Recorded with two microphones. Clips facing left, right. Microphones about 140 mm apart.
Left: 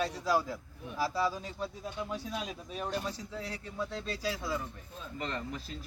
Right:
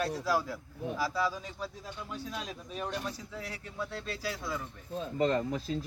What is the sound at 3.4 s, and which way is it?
Speech, 25° left (ahead or behind).